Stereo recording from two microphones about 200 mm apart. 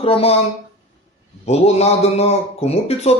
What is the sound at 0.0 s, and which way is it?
Speech, 30° left (ahead or behind).